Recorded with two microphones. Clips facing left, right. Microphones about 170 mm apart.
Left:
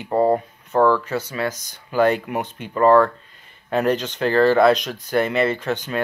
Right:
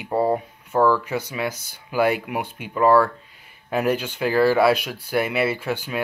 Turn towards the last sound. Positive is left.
turn(degrees=-10)  # may be behind; listen again after turning